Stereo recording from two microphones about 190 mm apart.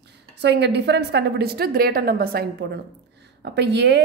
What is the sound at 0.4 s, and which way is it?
A woman's voice, 60° right (ahead or behind).